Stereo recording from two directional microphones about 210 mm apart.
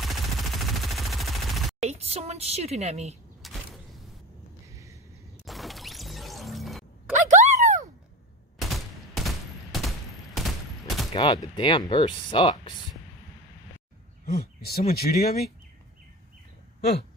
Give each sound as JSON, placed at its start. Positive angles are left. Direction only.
{"t": 0.0, "sound": "machine gun", "side_deg": 0}
{"t": 1.8, "sound": "a woman's voice", "side_deg": -30}
{"t": 3.4, "sound": "a sound", "side_deg": 0}
{"t": 5.4, "sound": "music", "side_deg": 0}
{"t": 7.1, "sound": "a sound", "side_deg": -35}
{"t": 9.1, "sound": "fusillade", "side_deg": 0}
{"t": 11.1, "sound": "speech", "side_deg": 20}
{"t": 14.2, "sound": "speech", "side_deg": 45}